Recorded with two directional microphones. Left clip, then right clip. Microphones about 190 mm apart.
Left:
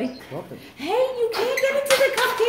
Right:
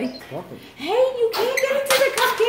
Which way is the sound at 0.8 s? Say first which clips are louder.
Right 1 dB; 20° left (ahead or behind).